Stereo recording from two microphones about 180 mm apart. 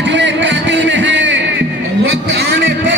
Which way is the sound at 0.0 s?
80° right.